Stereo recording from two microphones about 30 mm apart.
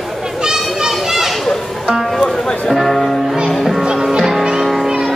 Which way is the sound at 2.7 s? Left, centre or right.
Centre.